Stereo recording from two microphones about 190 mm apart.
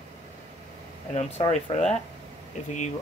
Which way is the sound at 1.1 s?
35° left (ahead or behind).